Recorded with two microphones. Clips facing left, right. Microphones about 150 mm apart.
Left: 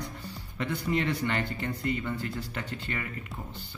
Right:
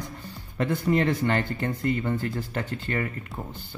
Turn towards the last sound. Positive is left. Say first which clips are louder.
# right 6 dB
turn(degrees=-45)  # may be behind; listen again after turning